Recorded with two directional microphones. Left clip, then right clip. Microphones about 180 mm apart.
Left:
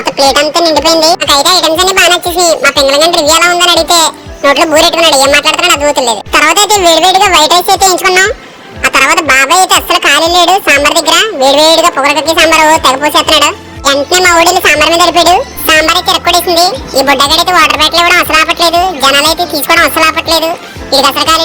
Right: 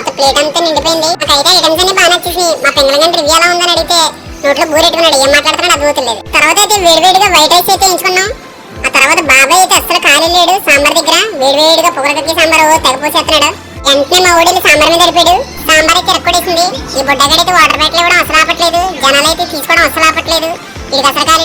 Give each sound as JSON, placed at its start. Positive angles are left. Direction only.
{"t": 0.2, "sound": "a woman's voice", "side_deg": 35}